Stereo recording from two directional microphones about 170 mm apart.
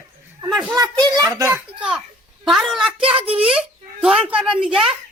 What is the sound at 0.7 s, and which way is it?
Speech, 20° right (ahead or behind).